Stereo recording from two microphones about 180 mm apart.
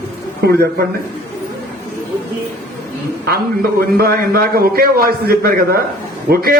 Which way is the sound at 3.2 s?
55° right (ahead or behind).